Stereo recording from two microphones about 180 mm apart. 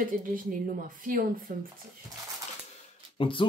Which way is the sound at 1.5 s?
55° right (ahead or behind).